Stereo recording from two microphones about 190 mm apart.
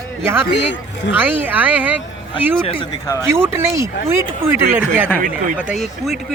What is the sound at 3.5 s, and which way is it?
Speech, 15° right (ahead or behind).